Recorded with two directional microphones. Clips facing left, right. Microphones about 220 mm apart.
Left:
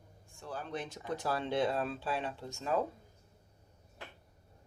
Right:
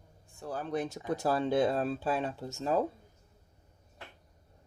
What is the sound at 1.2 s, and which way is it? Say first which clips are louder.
Speech: right 5 dB; 45° right (ahead or behind).